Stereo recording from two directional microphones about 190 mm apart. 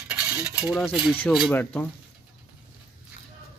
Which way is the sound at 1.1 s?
5° left (ahead or behind).